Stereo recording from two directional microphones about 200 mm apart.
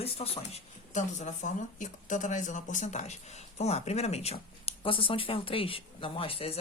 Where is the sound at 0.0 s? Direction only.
30° left (ahead or behind).